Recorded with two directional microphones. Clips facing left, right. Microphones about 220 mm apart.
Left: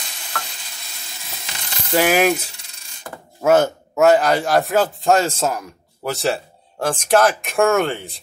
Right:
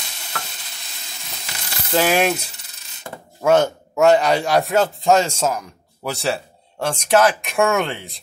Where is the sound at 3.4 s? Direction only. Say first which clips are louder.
Left 1 dB; 5° left (ahead or behind).